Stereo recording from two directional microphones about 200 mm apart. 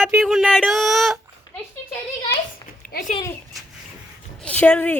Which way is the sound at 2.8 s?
45° left (ahead or behind).